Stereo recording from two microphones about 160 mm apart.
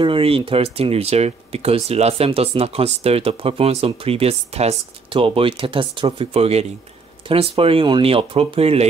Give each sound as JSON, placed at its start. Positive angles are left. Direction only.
{"t": 0.0, "sound": "speech", "side_deg": -35}